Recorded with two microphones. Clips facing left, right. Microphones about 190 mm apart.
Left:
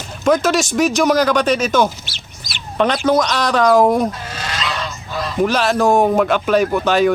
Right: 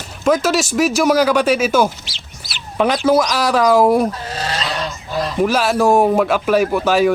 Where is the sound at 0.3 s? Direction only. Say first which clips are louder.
Even; 5° right (ahead or behind).